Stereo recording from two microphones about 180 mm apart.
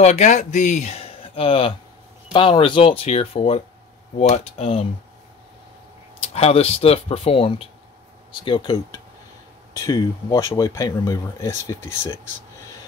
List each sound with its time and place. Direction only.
0.0 s a man's voice: 40° left (ahead or behind)
6.3 s speech: 35° left (ahead or behind); by 12.1 s 15° left (ahead or behind)